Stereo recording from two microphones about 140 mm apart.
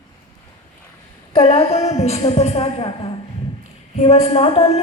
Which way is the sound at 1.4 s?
50° left (ahead or behind).